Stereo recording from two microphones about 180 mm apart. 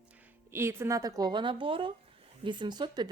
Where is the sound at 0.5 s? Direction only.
15° right (ahead or behind).